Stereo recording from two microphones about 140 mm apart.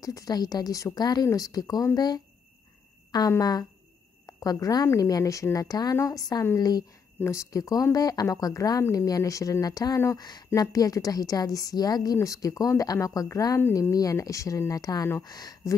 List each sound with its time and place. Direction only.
0.0 s speech: 25° left (ahead or behind)